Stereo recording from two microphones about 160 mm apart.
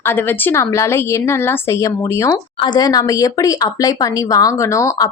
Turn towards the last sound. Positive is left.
turn(degrees=20)  # may be behind; listen again after turning